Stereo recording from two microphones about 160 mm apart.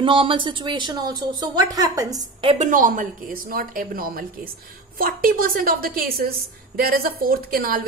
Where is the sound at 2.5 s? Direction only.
55° right (ahead or behind).